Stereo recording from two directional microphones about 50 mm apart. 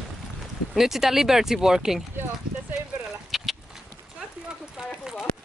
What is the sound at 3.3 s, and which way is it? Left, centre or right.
Horse, centre.